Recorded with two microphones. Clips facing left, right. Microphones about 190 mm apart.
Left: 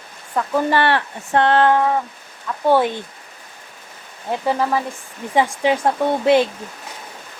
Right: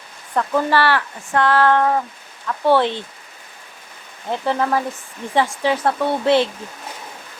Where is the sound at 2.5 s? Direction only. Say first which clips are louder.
Even; 15° left (ahead or behind).